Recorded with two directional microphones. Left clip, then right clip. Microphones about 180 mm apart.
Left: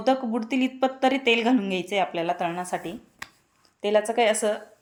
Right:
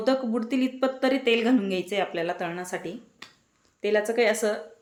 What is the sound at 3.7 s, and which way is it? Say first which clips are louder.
Speech: left 2 dB; 25° left (ahead or behind).